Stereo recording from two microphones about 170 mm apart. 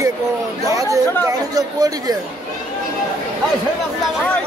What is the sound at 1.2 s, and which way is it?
Speech, 20° right (ahead or behind).